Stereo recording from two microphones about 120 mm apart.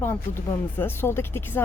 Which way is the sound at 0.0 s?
20° left (ahead or behind).